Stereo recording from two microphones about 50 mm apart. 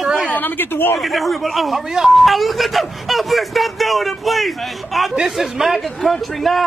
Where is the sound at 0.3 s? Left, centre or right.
Left.